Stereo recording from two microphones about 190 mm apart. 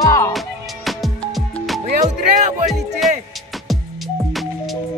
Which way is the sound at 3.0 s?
Centre (ahead or behind).